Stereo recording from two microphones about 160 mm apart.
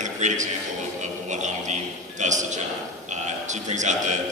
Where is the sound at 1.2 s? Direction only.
50° right (ahead or behind).